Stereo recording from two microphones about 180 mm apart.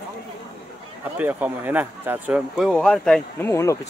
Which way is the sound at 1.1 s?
10° right (ahead or behind).